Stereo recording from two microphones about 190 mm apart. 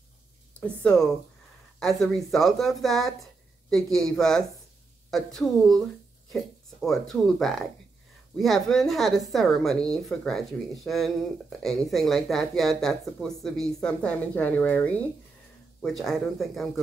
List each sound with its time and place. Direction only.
0.6 s a woman's voice: 5° left (ahead or behind)